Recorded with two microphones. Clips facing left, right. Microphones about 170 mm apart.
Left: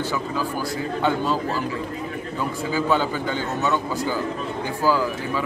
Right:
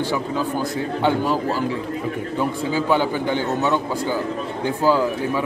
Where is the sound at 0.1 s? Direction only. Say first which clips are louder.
Right 3 dB; 20° right (ahead or behind).